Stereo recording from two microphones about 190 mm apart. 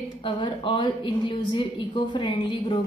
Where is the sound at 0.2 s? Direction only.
25° left (ahead or behind).